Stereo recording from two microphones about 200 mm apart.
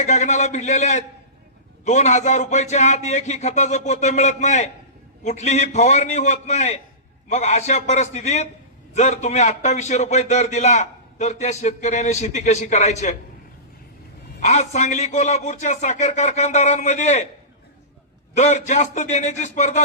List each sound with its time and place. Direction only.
0.0 s a man's voice: 35° left (ahead or behind)
14.4 s a man's voice: 35° left (ahead or behind)
18.3 s a man's voice: 35° left (ahead or behind)